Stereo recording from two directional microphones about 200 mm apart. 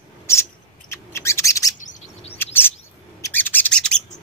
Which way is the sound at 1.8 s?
30° left (ahead or behind).